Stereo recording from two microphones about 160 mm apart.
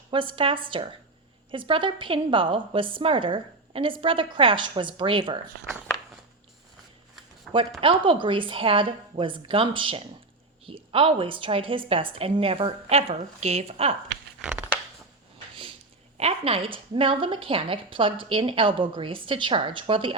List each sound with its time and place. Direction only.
0.1 s a woman's voice: 30° right (ahead or behind)
7.8 s a woman's voice: 35° right (ahead or behind)
14.4 s a sound: 10° right (ahead or behind)
16.1 s a woman's voice: 40° right (ahead or behind)